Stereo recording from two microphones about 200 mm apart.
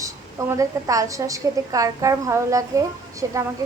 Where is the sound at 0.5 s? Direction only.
15° right (ahead or behind).